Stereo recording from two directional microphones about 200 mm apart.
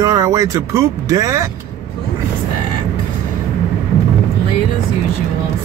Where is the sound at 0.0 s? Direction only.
20° right (ahead or behind).